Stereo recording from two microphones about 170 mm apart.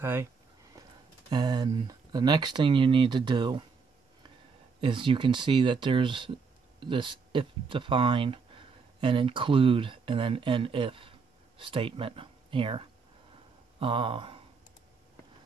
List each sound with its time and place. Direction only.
0.0 s speech: 15° right (ahead or behind)
1.3 s speech: 25° right (ahead or behind)
4.7 s speech: 30° right (ahead or behind)